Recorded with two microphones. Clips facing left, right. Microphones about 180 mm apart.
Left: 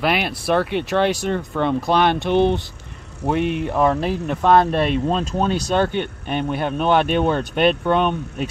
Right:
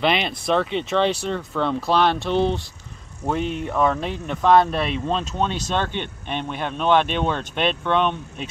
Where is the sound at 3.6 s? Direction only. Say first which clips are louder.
Left 3 dB; 5° left (ahead or behind).